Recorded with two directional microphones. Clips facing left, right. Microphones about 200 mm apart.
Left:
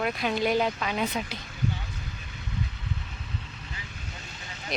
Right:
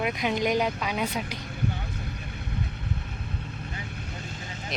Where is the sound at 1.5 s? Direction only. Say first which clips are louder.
Right 1 dB; 55° right (ahead or behind).